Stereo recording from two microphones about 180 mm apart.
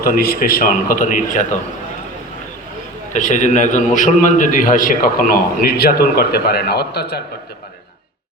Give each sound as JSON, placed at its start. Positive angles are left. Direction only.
{"t": 0.0, "sound": "a man's voice", "side_deg": 55}
{"t": 3.1, "sound": "a man's voice", "side_deg": 45}